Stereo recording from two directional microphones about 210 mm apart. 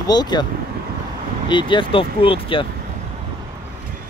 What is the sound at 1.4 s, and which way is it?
Speech, 25° left (ahead or behind).